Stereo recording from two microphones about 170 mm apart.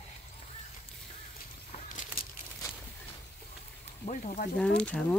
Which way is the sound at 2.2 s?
60° left (ahead or behind).